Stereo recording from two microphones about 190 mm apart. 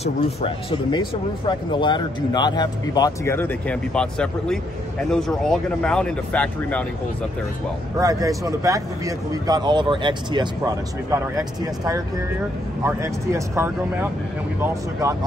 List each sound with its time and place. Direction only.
0.0 s speech: 30° left (ahead or behind); by 6.8 s 5° left (ahead or behind)
8.0 s speech: 20° right (ahead or behind)